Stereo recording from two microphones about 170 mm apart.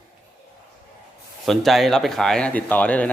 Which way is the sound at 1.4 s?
Centre (ahead or behind).